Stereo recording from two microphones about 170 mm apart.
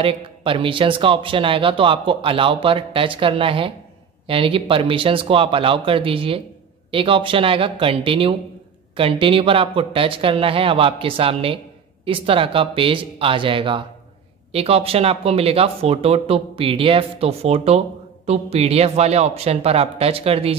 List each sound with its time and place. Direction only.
0.0 s speech: 30° right (ahead or behind)